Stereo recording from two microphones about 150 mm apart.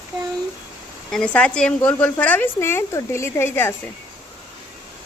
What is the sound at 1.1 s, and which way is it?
A woman's voice, 5° left (ahead or behind).